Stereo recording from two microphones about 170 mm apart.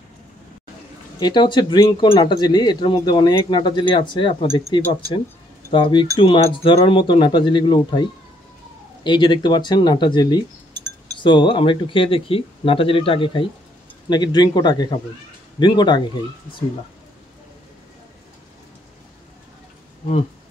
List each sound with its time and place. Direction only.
1.2 s speech: 25° left (ahead or behind)
9.0 s speech: 25° left (ahead or behind)